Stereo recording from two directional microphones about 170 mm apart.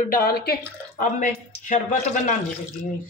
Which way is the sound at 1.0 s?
45° left (ahead or behind).